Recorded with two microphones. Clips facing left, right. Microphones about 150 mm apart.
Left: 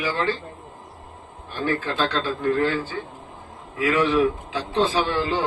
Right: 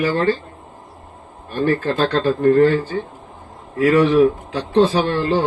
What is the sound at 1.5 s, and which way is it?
A man's voice, 60° right (ahead or behind).